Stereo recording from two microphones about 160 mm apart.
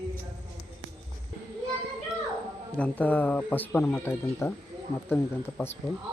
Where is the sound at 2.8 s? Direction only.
10° left (ahead or behind).